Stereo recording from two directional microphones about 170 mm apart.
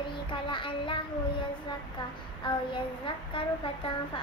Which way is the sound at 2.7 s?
30° left (ahead or behind).